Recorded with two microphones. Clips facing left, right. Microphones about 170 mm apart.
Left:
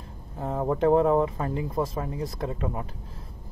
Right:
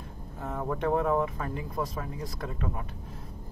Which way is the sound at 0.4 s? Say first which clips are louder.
Left 6 dB; 30° left (ahead or behind).